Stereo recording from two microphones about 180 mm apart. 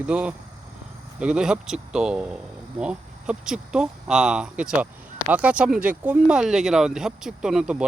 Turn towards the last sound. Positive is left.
turn(degrees=-5)  # may be behind; listen again after turning